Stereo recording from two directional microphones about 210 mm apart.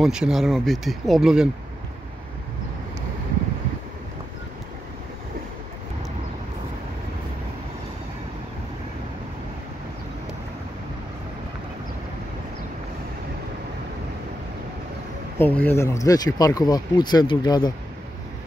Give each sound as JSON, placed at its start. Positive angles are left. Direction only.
{"t": 0.0, "sound": "speech", "side_deg": 0}
{"t": 15.3, "sound": "speech", "side_deg": 10}